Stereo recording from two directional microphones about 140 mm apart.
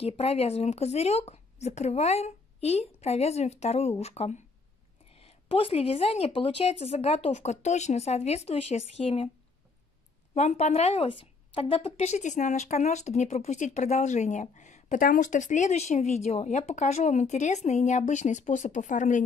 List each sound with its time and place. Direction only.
0.0 s speech: 45° left (ahead or behind)
10.3 s a woman's voice: 55° left (ahead or behind)